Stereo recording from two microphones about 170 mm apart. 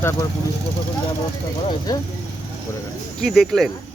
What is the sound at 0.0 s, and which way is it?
Speech, 15° left (ahead or behind).